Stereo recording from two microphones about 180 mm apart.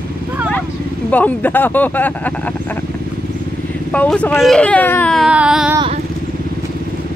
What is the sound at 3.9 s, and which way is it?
Speech, 5° left (ahead or behind).